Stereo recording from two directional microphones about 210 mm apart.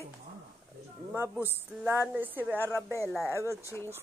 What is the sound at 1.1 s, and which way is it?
Speech, 10° right (ahead or behind).